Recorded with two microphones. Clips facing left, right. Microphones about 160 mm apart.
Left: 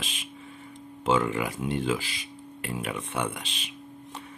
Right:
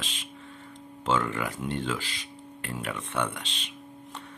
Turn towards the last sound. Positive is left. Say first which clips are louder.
# even
turn(degrees=10)  # may be behind; listen again after turning